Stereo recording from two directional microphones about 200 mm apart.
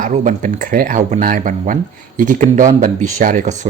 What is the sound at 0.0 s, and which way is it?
Speech, 40° right (ahead or behind).